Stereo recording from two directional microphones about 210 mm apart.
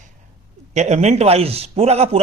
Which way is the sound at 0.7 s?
30° right (ahead or behind).